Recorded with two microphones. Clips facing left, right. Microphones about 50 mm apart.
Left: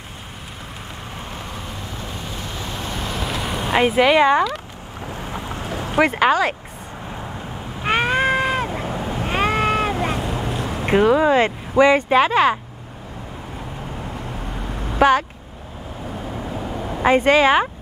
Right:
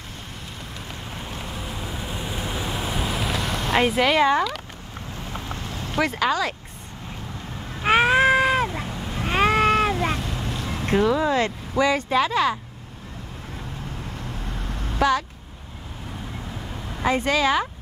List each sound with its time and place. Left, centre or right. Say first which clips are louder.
2.0 s vehicle: right 1 dB; centre
5.6 s vehicle: left 7 dB; left
7.8 s cat: right 2 dB; centre
8.8 s waves: left 6 dB; left
9.2 s vehicle: right 1 dB; centre
10.1 s boat: left 5 dB; left
10.7 s speech: left 5 dB; left
15.0 s speech: left 6 dB; left
16.5 s vehicle: left 8 dB; left